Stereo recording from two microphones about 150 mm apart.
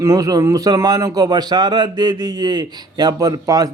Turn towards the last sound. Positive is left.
turn(degrees=-25)  # may be behind; listen again after turning